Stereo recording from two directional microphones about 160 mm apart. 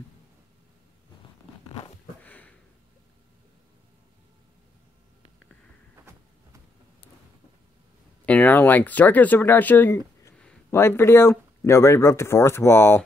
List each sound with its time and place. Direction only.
2.2 s sniff: 10° left (ahead or behind)
6.1 s a sound: 15° right (ahead or behind)
8.3 s speech: 10° left (ahead or behind)